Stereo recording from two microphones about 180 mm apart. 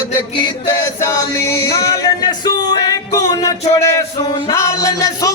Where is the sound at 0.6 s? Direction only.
15° left (ahead or behind).